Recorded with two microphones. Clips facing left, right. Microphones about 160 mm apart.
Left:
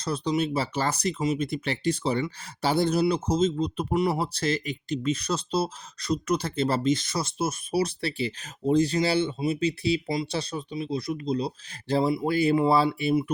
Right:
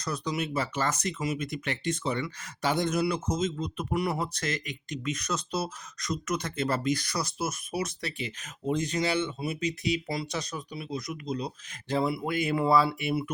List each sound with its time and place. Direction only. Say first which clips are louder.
0.0 s speech: left 5 dB; 30° left (ahead or behind)
3.9 s speech: left 4 dB; 25° left (ahead or behind)